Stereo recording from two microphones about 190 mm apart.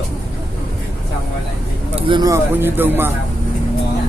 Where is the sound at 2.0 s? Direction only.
25° right (ahead or behind).